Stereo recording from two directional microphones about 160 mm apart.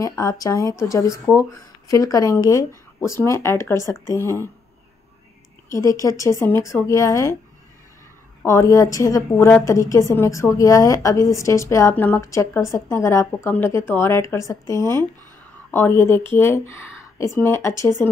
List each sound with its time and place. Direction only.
0.0 s a woman's voice: 20° left (ahead or behind)
5.7 s a woman's voice: 20° left (ahead or behind)
8.4 s a woman's voice: 20° left (ahead or behind)